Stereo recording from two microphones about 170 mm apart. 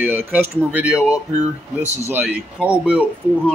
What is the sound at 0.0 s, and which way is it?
Speech, 10° right (ahead or behind).